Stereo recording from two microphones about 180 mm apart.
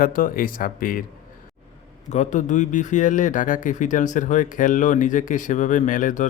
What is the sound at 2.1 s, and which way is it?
Speech, 40° left (ahead or behind).